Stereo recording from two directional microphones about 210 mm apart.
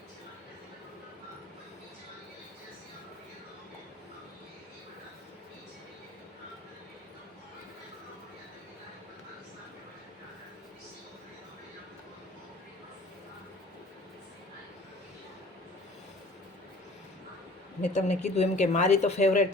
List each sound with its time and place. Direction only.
17.8 s speech: 30° left (ahead or behind)